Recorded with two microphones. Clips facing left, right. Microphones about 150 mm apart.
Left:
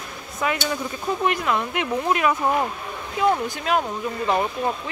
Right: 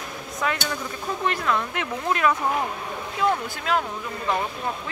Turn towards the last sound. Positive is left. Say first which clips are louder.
# left 4 dB
turn(degrees=20)  # may be behind; listen again after turning